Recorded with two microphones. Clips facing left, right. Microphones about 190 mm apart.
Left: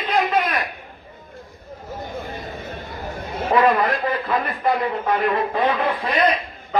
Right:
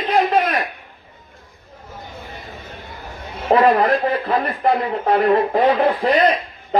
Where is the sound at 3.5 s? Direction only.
35° right (ahead or behind).